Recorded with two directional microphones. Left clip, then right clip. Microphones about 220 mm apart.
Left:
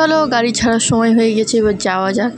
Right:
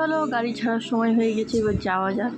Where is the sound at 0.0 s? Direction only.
50° left (ahead or behind).